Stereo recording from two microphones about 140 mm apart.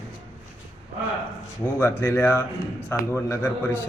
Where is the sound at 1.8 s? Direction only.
15° left (ahead or behind).